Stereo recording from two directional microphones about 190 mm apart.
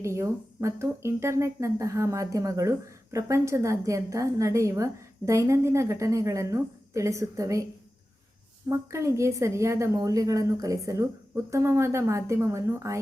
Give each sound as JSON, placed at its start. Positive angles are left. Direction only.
{"t": 0.0, "sound": "speech", "side_deg": -15}
{"t": 8.7, "sound": "speech", "side_deg": -15}